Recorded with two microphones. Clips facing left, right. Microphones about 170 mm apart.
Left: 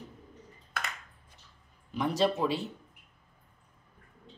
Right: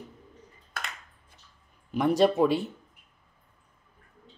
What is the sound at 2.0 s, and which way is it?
Speech, 55° right (ahead or behind).